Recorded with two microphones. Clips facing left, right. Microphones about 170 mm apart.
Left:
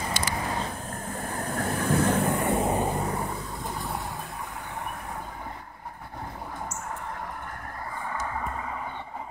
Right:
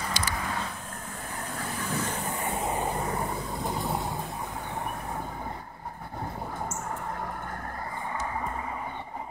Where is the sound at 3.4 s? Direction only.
20° right (ahead or behind).